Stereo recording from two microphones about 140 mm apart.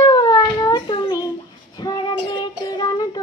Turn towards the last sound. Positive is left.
turn(degrees=30)  # may be behind; listen again after turning